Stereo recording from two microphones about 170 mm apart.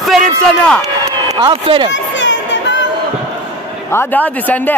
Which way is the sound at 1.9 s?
90° left.